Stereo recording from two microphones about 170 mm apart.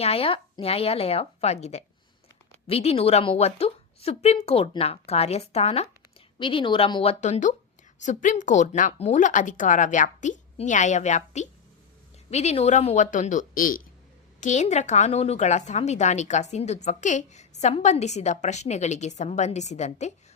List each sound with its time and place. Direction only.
0.0 s a woman's voice: 35° left (ahead or behind)